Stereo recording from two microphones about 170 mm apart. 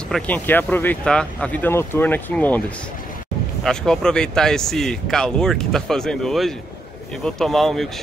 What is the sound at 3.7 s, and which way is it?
Speech, 5° left (ahead or behind).